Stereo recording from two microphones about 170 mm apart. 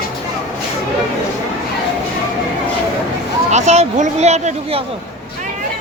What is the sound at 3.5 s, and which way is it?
Speech, 40° right (ahead or behind).